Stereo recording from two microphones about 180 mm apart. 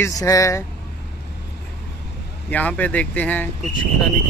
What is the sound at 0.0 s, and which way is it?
Speech, 20° left (ahead or behind).